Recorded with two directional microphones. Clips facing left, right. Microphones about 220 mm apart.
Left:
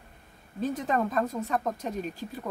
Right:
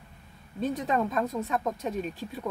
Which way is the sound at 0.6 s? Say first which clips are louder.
Even; centre (ahead or behind).